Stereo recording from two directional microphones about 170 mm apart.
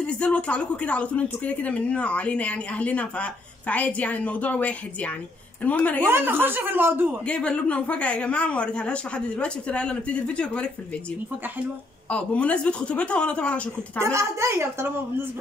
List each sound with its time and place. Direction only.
0.0 s speech: 5° left (ahead or behind)
6.0 s a woman's voice: 10° right (ahead or behind)
7.2 s speech: 5° left (ahead or behind)
12.1 s speech: 5° left (ahead or behind)
14.0 s a woman's voice: 15° right (ahead or behind)